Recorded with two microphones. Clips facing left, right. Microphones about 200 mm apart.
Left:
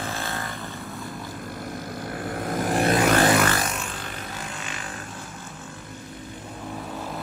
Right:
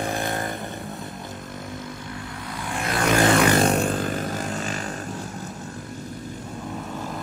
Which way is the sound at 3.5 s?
30° right (ahead or behind).